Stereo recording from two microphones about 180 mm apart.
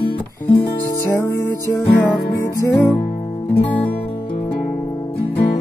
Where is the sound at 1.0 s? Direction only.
15° left (ahead or behind).